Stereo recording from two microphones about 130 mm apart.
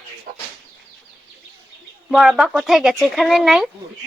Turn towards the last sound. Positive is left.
turn(degrees=-5)  # may be behind; listen again after turning